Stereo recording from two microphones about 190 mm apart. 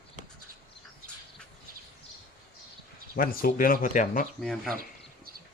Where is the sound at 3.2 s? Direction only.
50° left (ahead or behind).